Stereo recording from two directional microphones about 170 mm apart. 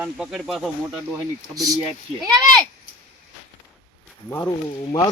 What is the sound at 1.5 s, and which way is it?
Speech, 20° right (ahead or behind).